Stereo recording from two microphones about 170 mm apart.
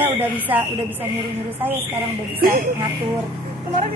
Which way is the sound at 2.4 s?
60° right (ahead or behind).